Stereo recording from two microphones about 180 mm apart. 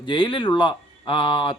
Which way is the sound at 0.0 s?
25° left (ahead or behind).